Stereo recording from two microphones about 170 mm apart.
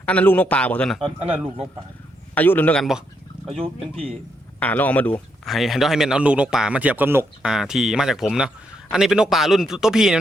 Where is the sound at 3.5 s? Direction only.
35° right (ahead or behind).